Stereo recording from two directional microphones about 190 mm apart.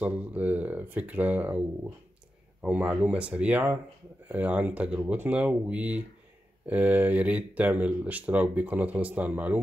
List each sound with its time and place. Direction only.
0.0 s speech: 10° right (ahead or behind)
2.6 s speech: 5° right (ahead or behind)